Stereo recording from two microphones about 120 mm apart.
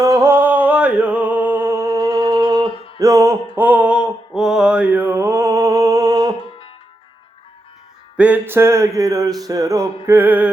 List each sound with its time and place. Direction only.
0.0 s music: 25° right (ahead or behind)
3.0 s mantra: 25° right (ahead or behind)
6.4 s music: 50° left (ahead or behind)
8.1 s music: 10° right (ahead or behind)